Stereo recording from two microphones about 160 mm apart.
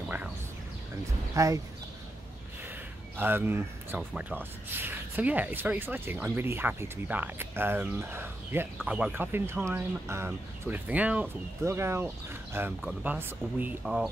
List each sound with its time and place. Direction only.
1.3 s speech: 20° right (ahead or behind)
3.2 s speech: 15° right (ahead or behind)